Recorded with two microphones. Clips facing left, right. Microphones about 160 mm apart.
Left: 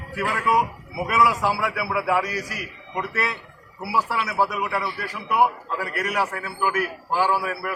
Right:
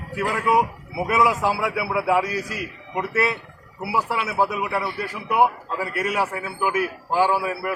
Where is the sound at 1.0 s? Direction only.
20° right (ahead or behind).